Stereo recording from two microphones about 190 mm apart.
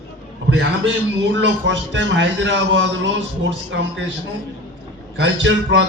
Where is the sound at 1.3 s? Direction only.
70° right (ahead or behind).